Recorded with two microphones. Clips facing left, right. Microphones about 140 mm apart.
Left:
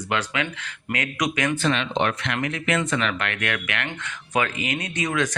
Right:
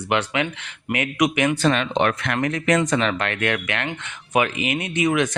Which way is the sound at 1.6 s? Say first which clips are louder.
Right 3 dB; 45° right (ahead or behind).